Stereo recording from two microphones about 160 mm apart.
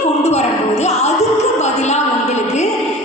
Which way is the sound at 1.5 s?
45° left (ahead or behind).